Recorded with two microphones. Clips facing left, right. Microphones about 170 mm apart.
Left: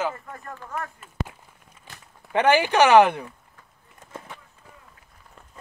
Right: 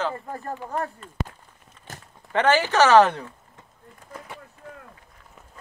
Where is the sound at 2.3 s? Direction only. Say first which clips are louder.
Left 1 dB; 15° left (ahead or behind).